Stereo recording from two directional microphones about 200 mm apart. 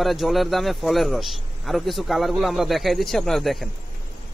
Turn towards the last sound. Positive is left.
turn(degrees=0)  # may be behind; listen again after turning